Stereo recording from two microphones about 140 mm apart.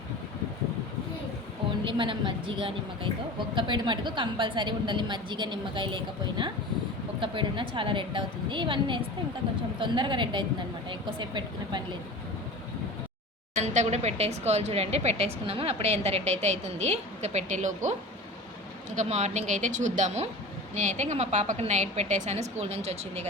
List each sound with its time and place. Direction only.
1.8 s a woman's voice: 35° right (ahead or behind)
13.6 s speech: 55° right (ahead or behind)
18.9 s a woman's voice: 55° right (ahead or behind)